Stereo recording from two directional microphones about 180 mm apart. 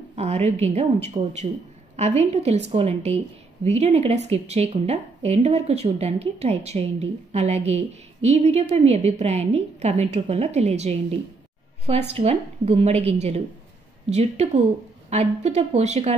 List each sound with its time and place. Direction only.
0.1 s a woman's voice: 35° right (ahead or behind)